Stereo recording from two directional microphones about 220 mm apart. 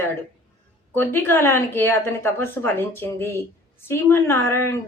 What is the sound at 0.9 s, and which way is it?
Speech, 10° left (ahead or behind).